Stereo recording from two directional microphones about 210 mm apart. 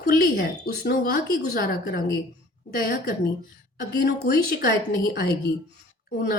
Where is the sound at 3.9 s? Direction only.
50° left (ahead or behind).